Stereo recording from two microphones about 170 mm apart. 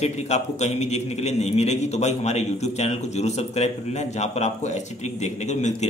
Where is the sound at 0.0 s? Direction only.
40° left (ahead or behind).